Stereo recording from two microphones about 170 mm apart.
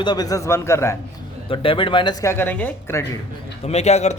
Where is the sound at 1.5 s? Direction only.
30° left (ahead or behind); by 3.1 s 15° left (ahead or behind).